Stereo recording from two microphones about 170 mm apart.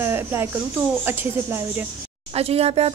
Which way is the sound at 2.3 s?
35° right (ahead or behind).